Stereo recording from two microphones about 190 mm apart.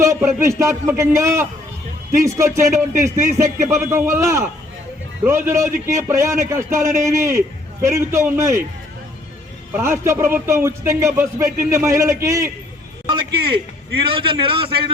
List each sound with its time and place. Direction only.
0.0 s speech: 15° right (ahead or behind)
9.7 s speech: 10° right (ahead or behind)
13.1 s a man's voice: 25° right (ahead or behind)